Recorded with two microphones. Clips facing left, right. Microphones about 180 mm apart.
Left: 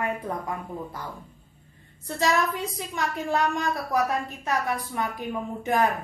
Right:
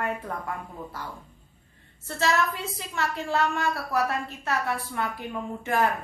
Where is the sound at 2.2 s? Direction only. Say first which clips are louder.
Left 1 dB; 15° left (ahead or behind).